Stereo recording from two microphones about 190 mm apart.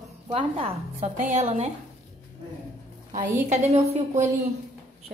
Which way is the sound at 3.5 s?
40° right (ahead or behind).